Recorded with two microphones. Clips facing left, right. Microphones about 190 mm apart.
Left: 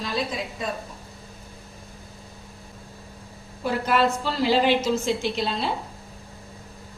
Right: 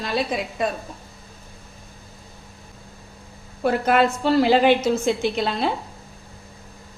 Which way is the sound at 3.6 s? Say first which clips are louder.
Right 4 dB; 55° right (ahead or behind).